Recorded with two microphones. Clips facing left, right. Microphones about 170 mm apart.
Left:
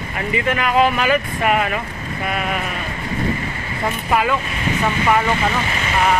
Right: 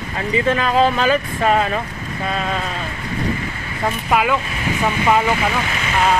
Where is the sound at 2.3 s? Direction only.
10° left (ahead or behind).